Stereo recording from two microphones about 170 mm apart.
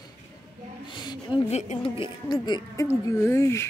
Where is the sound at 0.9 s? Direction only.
25° left (ahead or behind).